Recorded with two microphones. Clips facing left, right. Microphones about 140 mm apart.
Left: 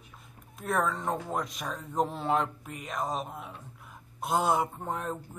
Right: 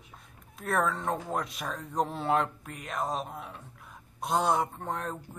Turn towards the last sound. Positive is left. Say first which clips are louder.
# left 1 dB
turn(degrees=5)  # may be behind; listen again after turning